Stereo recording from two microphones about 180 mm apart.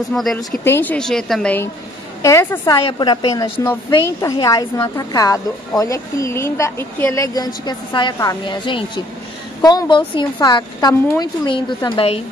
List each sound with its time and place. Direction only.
0.1 s a woman's voice: centre (ahead or behind); by 12.2 s 30° left (ahead or behind)